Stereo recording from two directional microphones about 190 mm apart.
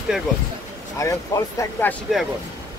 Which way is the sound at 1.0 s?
15° left (ahead or behind).